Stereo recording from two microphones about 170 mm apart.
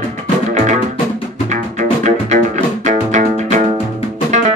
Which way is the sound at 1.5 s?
45° right (ahead or behind).